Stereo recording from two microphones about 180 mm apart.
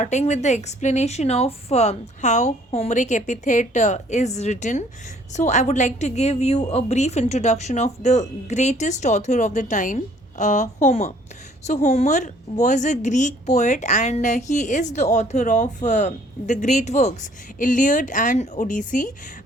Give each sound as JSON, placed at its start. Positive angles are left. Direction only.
{"t": 0.0, "sound": "speech", "side_deg": 40}